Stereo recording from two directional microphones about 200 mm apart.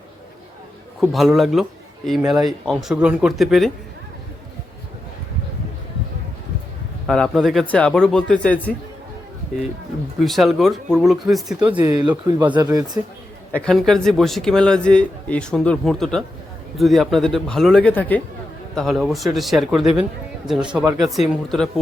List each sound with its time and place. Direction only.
1.1 s a man's voice: centre (ahead or behind)
7.1 s a man's voice: centre (ahead or behind)
10.2 s a man's voice: centre (ahead or behind)
12.6 s speech: 20° right (ahead or behind)
13.5 s a man's voice: 5° left (ahead or behind)